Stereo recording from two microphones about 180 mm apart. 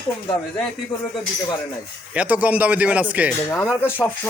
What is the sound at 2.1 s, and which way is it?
A man's voice, 10° right (ahead or behind).